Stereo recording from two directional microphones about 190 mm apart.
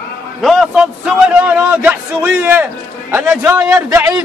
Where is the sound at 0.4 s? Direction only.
Centre (ahead or behind).